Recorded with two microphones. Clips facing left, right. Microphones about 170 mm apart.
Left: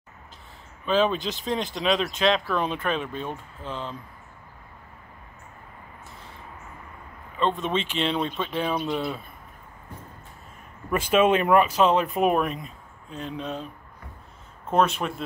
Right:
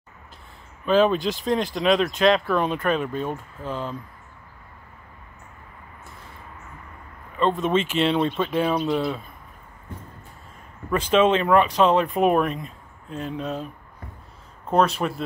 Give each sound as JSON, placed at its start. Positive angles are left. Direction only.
{"t": 0.8, "sound": "speech", "side_deg": -5}
{"t": 1.1, "sound": "speech", "side_deg": -45}
{"t": 1.8, "sound": "speech", "side_deg": 0}
{"t": 7.3, "sound": "speech", "side_deg": 0}
{"t": 10.9, "sound": "speech", "side_deg": 10}
{"t": 15.0, "sound": "speech", "side_deg": 0}